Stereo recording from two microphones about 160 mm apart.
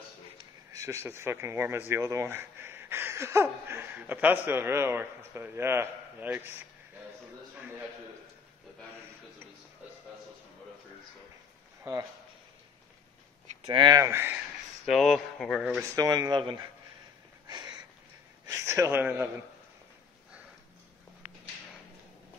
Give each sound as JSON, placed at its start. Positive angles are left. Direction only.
{"t": 0.4, "sound": "speech", "side_deg": -20}
{"t": 11.8, "sound": "speech", "side_deg": -20}
{"t": 13.7, "sound": "speech", "side_deg": -25}
{"t": 14.9, "sound": "speech", "side_deg": 0}
{"t": 15.8, "sound": "speech", "side_deg": -20}
{"t": 17.5, "sound": "a sound", "side_deg": -25}
{"t": 18.5, "sound": "speech", "side_deg": -20}